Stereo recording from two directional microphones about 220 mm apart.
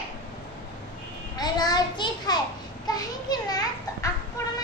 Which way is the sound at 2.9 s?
15° left (ahead or behind).